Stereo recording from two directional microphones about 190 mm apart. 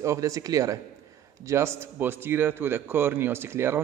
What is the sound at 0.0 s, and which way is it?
A man's voice, 15° right (ahead or behind).